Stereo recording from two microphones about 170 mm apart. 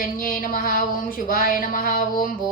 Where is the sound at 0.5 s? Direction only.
55° left (ahead or behind).